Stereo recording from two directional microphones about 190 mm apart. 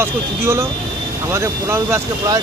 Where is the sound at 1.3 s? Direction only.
15° right (ahead or behind).